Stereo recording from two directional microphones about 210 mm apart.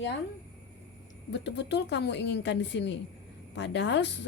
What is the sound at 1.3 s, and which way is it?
A woman's voice, 55° left (ahead or behind).